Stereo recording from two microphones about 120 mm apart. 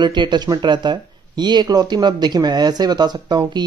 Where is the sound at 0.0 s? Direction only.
40° right (ahead or behind).